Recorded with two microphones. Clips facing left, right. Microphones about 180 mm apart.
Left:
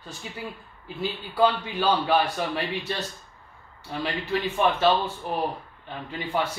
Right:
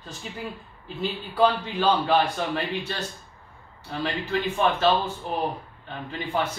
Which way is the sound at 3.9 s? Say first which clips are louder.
Even; 15° left (ahead or behind).